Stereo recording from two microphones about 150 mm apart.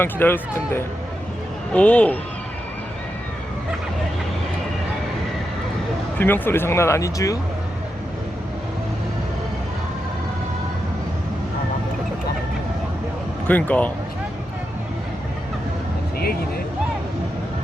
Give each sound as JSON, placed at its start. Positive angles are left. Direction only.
{"t": 0.0, "sound": "speech", "side_deg": 15}
{"t": 6.1, "sound": "speech", "side_deg": 15}
{"t": 13.5, "sound": "speech", "side_deg": 10}